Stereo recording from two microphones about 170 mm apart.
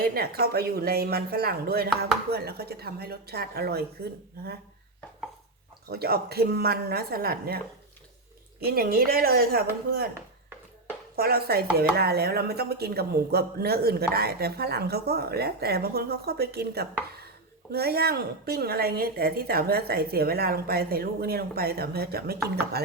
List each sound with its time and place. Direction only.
0.0 s a woman's voice: 65° right (ahead or behind)
5.9 s speech: 65° right (ahead or behind)
8.6 s a woman's voice: 65° right (ahead or behind)
11.2 s a woman's voice: 65° right (ahead or behind)